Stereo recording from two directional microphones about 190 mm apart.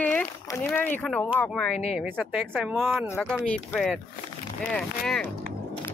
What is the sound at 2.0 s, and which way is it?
Speech, 5° right (ahead or behind).